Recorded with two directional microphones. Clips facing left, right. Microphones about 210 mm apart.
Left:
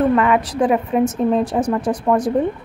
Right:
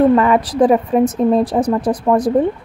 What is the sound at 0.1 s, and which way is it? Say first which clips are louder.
Speech: right 3 dB; 35° right (ahead or behind).